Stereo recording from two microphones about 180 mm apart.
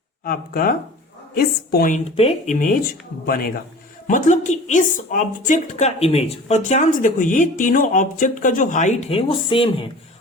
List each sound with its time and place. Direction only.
0.3 s a woman's voice: 55° left (ahead or behind)
2.0 s speech: 35° left (ahead or behind)
4.0 s a woman's voice: 45° left (ahead or behind); by 9.8 s 30° left (ahead or behind)